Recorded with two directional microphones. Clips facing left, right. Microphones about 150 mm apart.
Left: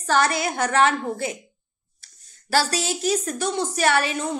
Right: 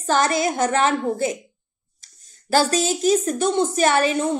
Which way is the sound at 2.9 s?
25° right (ahead or behind).